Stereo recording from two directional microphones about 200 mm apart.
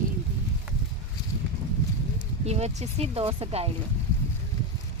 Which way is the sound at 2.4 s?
30° right (ahead or behind).